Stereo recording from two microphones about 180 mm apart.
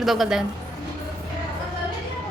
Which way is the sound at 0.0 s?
Centre (ahead or behind).